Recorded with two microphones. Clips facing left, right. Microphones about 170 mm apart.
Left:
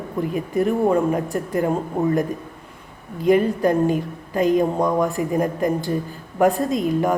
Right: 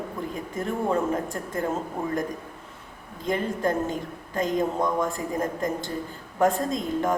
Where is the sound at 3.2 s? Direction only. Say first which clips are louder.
Left 9 dB; 15° left (ahead or behind).